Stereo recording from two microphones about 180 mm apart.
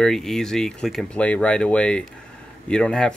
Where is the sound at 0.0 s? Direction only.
Centre (ahead or behind).